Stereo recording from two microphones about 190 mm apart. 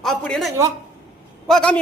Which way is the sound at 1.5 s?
5° left (ahead or behind).